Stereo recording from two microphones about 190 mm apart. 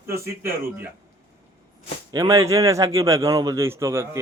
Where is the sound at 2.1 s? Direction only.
15° right (ahead or behind).